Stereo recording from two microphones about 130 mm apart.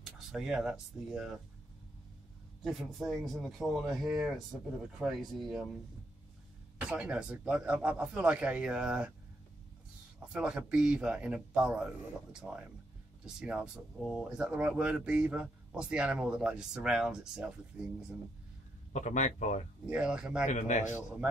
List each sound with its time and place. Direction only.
0.0 s speech: centre (ahead or behind)
2.6 s speech: centre (ahead or behind)
6.8 s speech: 10° right (ahead or behind)
10.3 s speech: 5° right (ahead or behind)
18.9 s speech: 65° left (ahead or behind)
19.9 s speech: 5° right (ahead or behind)
20.4 s a man's voice: 65° left (ahead or behind)